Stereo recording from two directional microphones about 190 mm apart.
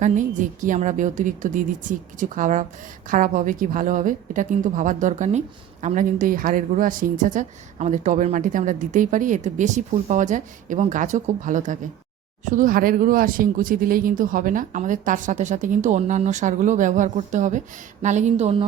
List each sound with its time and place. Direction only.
0.0 s a woman's voice: 40° right (ahead or behind)